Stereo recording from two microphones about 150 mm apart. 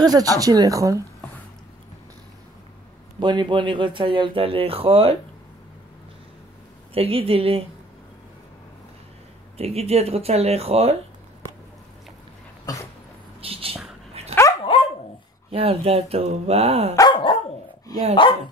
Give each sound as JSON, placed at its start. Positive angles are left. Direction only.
{"t": 0.0, "sound": "speech", "side_deg": -25}
{"t": 3.2, "sound": "speech", "side_deg": -30}
{"t": 6.9, "sound": "speech", "side_deg": -40}
{"t": 9.6, "sound": "speech", "side_deg": -45}
{"t": 12.7, "sound": "dog", "side_deg": 25}
{"t": 13.4, "sound": "speech", "side_deg": -40}
{"t": 14.2, "sound": "dog", "side_deg": -45}
{"t": 14.7, "sound": "dog", "side_deg": 35}
{"t": 15.5, "sound": "speech", "side_deg": -40}
{"t": 16.9, "sound": "dog", "side_deg": 30}